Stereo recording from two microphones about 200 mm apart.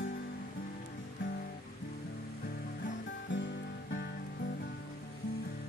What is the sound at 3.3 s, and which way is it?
Music, 65° left (ahead or behind).